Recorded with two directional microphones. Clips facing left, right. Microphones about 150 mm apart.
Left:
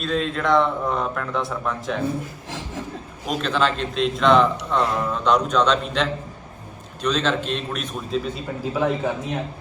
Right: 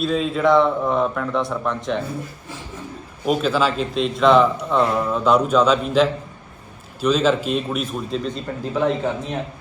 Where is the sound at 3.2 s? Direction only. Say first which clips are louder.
Right 3 dB; 5° right (ahead or behind).